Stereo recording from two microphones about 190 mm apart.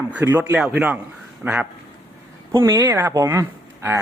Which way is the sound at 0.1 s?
10° right (ahead or behind).